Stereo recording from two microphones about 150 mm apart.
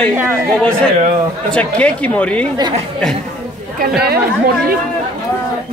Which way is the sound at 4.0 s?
90° right.